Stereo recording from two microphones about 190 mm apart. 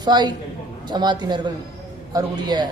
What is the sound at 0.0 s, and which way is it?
A man's voice, 20° right (ahead or behind).